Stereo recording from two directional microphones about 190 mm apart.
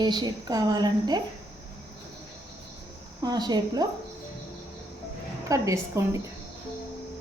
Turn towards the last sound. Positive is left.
turn(degrees=-15)  # may be behind; listen again after turning